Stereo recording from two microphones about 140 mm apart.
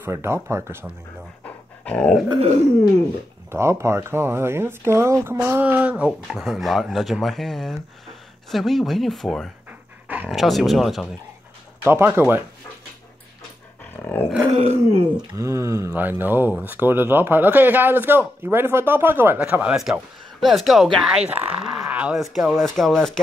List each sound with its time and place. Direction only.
0.0 s speech: 20° right (ahead or behind)
1.4 s dog: 10° left (ahead or behind)
3.5 s speech: 20° right (ahead or behind); by 9.5 s centre (ahead or behind)
9.7 s pant: 10° right (ahead or behind)
11.8 s speech: 15° right (ahead or behind)
14.0 s roar: 15° left (ahead or behind)
14.5 s a sound: 50° right (ahead or behind)
15.3 s speech: 20° right (ahead or behind); by 23.2 s 5° left (ahead or behind)